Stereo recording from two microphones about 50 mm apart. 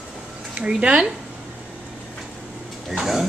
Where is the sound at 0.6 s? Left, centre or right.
Right.